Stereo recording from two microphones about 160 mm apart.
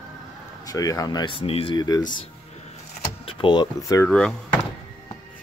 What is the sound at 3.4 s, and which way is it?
Speech, 25° left (ahead or behind).